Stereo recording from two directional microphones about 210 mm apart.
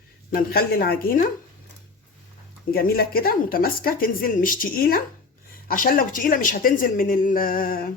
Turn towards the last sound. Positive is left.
turn(degrees=45)  # may be behind; listen again after turning